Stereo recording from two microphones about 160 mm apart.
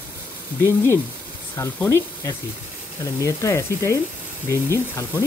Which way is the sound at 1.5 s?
20° left (ahead or behind).